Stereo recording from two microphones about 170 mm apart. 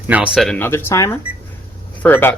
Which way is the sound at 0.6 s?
15° left (ahead or behind).